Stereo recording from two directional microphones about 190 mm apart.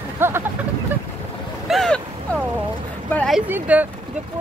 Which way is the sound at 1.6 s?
Centre (ahead or behind).